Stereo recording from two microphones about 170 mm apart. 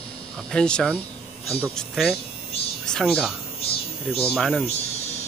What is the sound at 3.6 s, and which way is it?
Insect, 35° left (ahead or behind).